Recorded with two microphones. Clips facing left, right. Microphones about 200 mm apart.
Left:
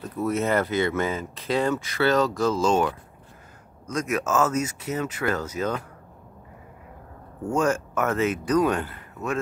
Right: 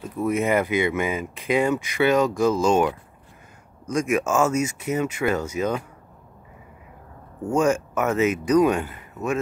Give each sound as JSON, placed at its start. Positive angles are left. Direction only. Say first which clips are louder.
{"t": 0.0, "sound": "speech", "louder": "right 2 dB", "side_deg": -10}
{"t": 7.5, "sound": "speech", "louder": "right 3 dB", "side_deg": -10}